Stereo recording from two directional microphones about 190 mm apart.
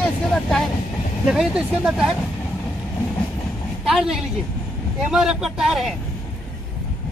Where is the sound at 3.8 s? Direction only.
Centre (ahead or behind).